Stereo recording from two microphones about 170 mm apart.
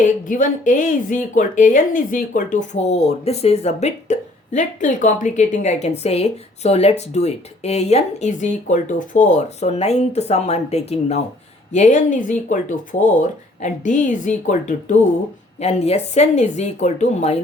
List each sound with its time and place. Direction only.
0.0 s a woman's voice: 50° left (ahead or behind)